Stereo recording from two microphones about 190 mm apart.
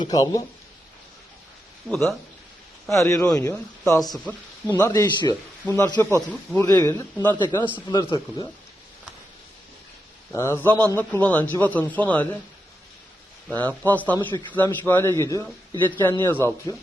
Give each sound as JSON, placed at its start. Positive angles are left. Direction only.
{"t": 0.0, "sound": "speech", "side_deg": 20}
{"t": 1.9, "sound": "speech", "side_deg": 5}
{"t": 2.9, "sound": "speech", "side_deg": 15}
{"t": 5.6, "sound": "speech", "side_deg": 10}
{"t": 7.3, "sound": "speech", "side_deg": 25}
{"t": 10.3, "sound": "speech", "side_deg": 15}
{"t": 13.8, "sound": "speech", "side_deg": 10}